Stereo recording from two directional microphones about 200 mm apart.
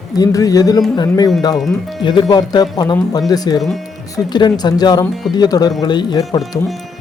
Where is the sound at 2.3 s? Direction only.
20° left (ahead or behind).